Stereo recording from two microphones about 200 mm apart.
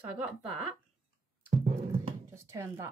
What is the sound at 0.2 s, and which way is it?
Speech, 5° right (ahead or behind).